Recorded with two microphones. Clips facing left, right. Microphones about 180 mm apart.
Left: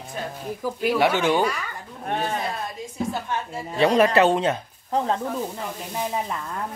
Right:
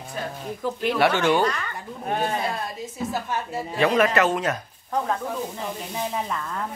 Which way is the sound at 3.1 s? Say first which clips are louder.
Right 1 dB; 5° right (ahead or behind).